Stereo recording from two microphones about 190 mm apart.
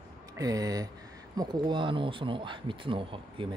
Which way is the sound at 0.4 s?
20° right (ahead or behind).